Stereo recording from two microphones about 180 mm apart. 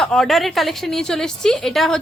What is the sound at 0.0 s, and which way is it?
A woman's voice, 5° left (ahead or behind).